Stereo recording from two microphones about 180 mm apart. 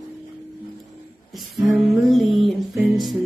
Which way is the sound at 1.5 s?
Centre (ahead or behind).